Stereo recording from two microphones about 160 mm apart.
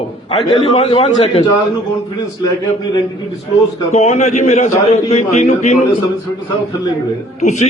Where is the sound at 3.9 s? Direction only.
40° left (ahead or behind).